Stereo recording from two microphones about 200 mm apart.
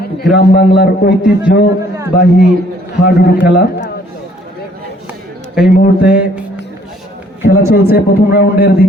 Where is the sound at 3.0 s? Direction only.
55° left (ahead or behind).